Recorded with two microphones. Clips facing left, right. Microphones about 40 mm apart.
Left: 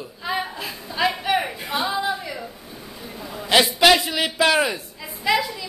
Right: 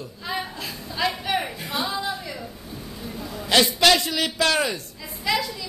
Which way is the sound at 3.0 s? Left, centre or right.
Centre.